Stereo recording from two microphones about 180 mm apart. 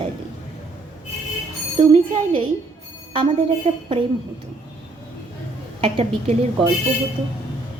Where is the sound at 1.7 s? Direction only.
30° right (ahead or behind).